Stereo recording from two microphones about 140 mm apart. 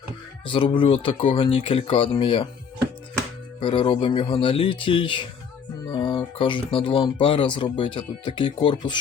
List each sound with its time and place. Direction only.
0.4 s speech: 35° left (ahead or behind)
3.6 s speech: 40° left (ahead or behind)